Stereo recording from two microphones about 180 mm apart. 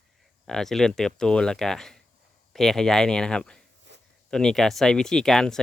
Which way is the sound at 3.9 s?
80° right.